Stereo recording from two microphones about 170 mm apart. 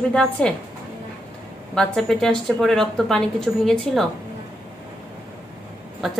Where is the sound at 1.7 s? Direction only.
Centre (ahead or behind).